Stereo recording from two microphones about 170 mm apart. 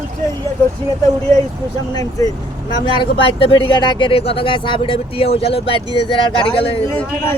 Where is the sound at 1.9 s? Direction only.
20° left (ahead or behind).